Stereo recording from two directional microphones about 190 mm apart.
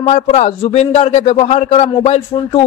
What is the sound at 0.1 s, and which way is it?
A man's voice, 35° left (ahead or behind).